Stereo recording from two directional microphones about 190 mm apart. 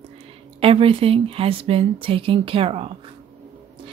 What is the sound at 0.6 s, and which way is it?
Speech, 30° right (ahead or behind).